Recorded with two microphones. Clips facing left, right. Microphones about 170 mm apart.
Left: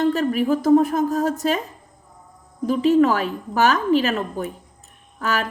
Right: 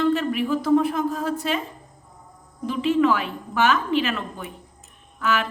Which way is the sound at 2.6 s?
40° left (ahead or behind).